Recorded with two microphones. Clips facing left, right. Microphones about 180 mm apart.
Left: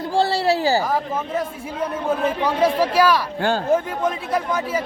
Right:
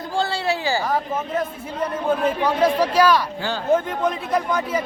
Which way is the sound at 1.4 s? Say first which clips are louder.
Even; 10° left (ahead or behind).